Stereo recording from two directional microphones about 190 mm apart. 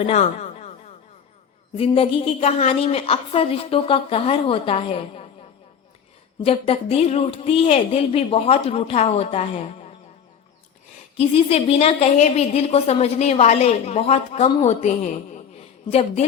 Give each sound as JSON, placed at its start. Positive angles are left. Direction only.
{"t": 0.0, "sound": "a woman's voice", "side_deg": 35}
{"t": 1.8, "sound": "a woman's voice", "side_deg": 30}
{"t": 6.4, "sound": "a woman's voice", "side_deg": 30}
{"t": 11.2, "sound": "a woman's voice", "side_deg": 30}